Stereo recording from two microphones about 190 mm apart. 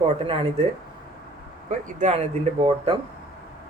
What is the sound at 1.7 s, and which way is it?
Speech, 35° right (ahead or behind).